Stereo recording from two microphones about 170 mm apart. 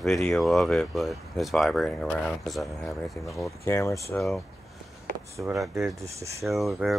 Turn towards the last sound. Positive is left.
turn(degrees=0)  # may be behind; listen again after turning